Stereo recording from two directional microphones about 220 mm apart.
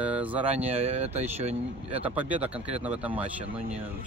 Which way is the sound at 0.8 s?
30° right (ahead or behind).